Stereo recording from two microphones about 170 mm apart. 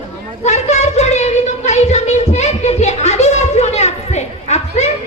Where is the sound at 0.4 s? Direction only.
40° left (ahead or behind).